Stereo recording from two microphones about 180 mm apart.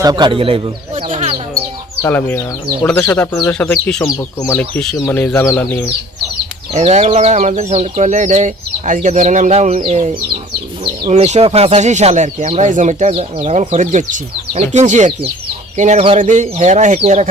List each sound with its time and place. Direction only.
0.0 s speech: 25° right (ahead or behind)
2.0 s speech: 10° left (ahead or behind)
6.7 s speech: 35° right (ahead or behind)